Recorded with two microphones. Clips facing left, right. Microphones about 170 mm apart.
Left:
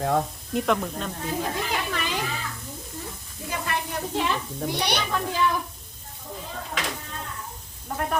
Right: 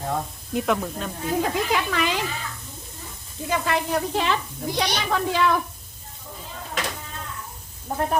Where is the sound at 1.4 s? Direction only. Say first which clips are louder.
Right 6 dB; 90° right.